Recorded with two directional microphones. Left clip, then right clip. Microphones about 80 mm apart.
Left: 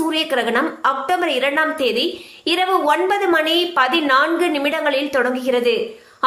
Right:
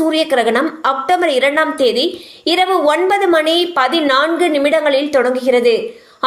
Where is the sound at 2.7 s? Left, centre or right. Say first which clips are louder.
Right 1 dB; right.